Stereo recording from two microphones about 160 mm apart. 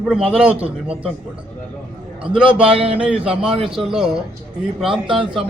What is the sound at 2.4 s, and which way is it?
Speech, 35° right (ahead or behind).